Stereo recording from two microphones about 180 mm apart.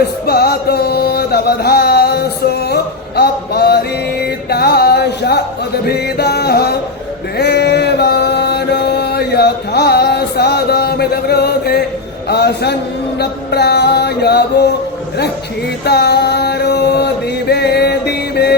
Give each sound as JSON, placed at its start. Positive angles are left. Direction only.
{"t": 0.0, "sound": "music", "side_deg": 60}
{"t": 7.3, "sound": "chant", "side_deg": 65}
{"t": 12.3, "sound": "music", "side_deg": 65}
{"t": 15.8, "sound": "music", "side_deg": 65}